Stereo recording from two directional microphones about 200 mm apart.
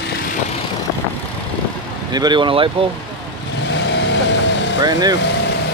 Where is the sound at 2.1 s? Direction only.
20° right (ahead or behind).